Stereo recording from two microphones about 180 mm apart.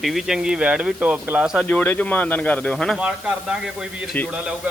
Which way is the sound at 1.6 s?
10° left (ahead or behind).